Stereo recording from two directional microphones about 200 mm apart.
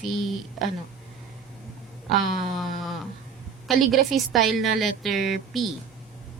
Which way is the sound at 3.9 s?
Centre (ahead or behind).